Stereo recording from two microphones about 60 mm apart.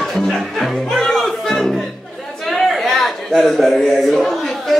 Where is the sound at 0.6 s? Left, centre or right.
Centre.